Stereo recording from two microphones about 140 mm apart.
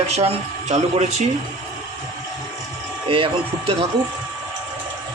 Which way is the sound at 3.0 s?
40° right (ahead or behind).